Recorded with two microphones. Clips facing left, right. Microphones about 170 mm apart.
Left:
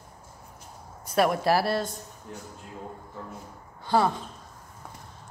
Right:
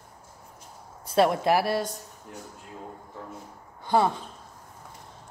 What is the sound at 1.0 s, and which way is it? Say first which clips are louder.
Speech: right 1 dB; 25° right (ahead or behind).